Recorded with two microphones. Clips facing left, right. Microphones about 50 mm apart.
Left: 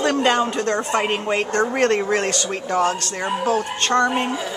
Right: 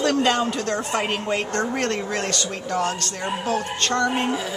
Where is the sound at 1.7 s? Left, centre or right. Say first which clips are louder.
Left 6 dB; left.